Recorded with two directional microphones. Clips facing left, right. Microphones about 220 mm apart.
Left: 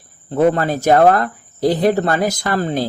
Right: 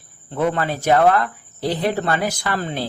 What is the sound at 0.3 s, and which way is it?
Speech, 40° left (ahead or behind).